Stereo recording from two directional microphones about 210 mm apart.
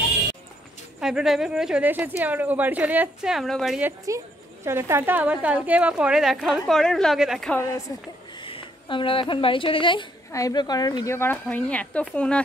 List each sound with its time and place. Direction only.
1.0 s a woman's voice: centre (ahead or behind)
4.6 s a woman's voice: 10° right (ahead or behind)
8.4 s speech: 25° left (ahead or behind); by 12.4 s 5° left (ahead or behind)